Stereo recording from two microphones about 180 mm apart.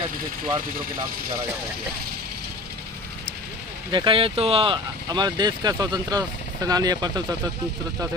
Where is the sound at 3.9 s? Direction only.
30° right (ahead or behind).